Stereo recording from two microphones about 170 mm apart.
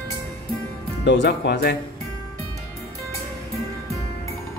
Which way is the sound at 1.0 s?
90° left.